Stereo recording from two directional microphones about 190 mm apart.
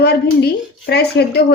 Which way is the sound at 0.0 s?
60° left (ahead or behind).